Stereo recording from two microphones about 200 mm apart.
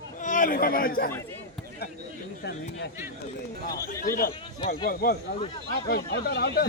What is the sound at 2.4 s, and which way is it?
Speech, 55° left (ahead or behind).